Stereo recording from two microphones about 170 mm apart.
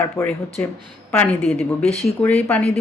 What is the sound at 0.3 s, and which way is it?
Speech, 5° left (ahead or behind).